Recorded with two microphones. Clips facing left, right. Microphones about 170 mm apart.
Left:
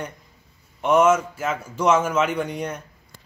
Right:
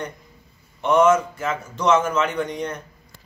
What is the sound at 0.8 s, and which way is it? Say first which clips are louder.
A man's voice: right 1 dB; 10° left (ahead or behind).